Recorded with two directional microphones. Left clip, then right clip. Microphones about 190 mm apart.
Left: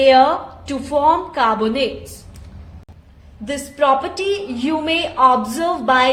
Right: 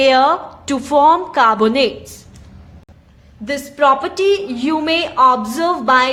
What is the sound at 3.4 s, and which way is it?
Female singing, 25° right (ahead or behind).